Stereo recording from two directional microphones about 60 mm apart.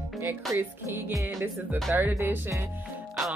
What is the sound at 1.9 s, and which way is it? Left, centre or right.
Music, right.